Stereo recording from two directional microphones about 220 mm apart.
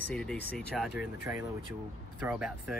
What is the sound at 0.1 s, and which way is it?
Speech, 5° left (ahead or behind).